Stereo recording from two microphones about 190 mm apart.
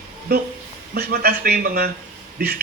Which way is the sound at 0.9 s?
55° right (ahead or behind).